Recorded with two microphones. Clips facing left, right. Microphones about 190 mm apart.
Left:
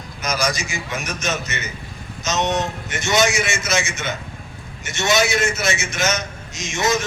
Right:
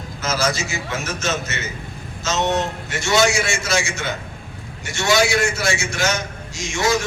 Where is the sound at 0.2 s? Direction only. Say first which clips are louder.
Right 1 dB; 15° left (ahead or behind).